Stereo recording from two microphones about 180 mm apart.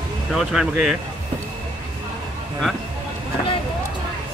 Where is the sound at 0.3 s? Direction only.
Centre (ahead or behind).